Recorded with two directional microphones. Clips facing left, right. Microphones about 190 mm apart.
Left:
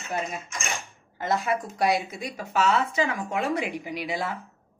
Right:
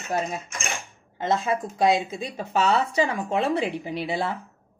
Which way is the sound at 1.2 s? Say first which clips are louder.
Right 2 dB; 25° right (ahead or behind).